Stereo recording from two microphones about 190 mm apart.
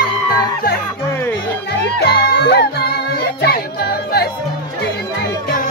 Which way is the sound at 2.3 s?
60° left (ahead or behind).